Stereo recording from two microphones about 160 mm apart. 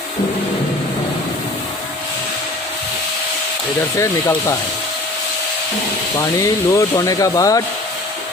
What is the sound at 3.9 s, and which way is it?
Speech, 15° left (ahead or behind).